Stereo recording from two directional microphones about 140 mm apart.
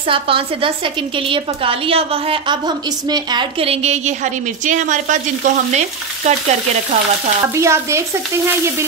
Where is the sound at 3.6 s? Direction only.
45° right (ahead or behind).